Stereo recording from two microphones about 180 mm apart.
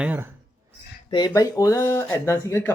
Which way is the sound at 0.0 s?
10° right (ahead or behind).